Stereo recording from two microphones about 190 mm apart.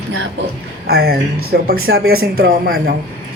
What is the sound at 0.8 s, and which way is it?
Speech, 55° right (ahead or behind).